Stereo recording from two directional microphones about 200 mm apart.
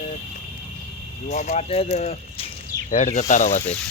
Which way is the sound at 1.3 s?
35° left (ahead or behind).